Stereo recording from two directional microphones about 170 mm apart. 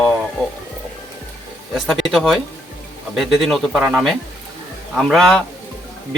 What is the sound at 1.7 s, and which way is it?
A man's voice, centre (ahead or behind).